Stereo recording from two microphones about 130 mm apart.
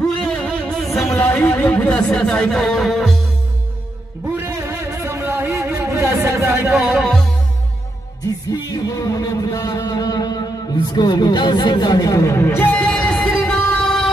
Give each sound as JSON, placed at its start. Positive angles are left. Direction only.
{"t": 0.2, "sound": "music", "side_deg": 0}
{"t": 1.1, "sound": "speech", "side_deg": 10}
{"t": 4.4, "sound": "a sound", "side_deg": -20}
{"t": 6.7, "sound": "music", "side_deg": 0}
{"t": 8.5, "sound": "speech", "side_deg": 30}
{"t": 10.9, "sound": "a sound", "side_deg": 35}